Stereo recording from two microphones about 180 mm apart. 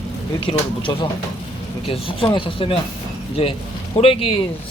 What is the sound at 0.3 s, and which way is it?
Speech, 30° left (ahead or behind).